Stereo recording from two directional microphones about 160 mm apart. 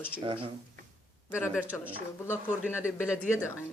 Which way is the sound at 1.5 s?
10° right (ahead or behind).